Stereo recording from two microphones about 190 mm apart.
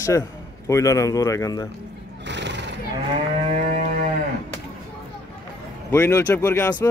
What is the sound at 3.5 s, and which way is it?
Music, 45° right (ahead or behind).